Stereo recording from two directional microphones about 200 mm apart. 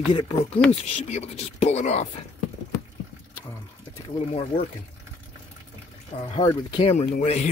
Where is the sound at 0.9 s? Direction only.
30° left (ahead or behind).